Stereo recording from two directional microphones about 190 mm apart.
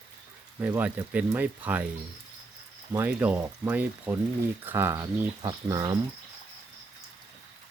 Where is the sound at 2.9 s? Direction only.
10° right (ahead or behind).